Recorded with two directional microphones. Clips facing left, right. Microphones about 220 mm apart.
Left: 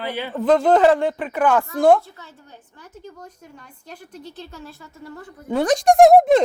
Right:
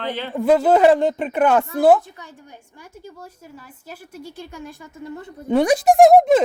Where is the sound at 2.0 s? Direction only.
15° right (ahead or behind).